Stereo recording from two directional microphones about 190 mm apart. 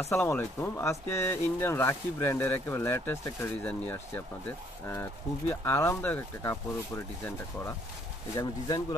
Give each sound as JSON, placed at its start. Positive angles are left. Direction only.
{"t": 0.0, "sound": "speech", "side_deg": 10}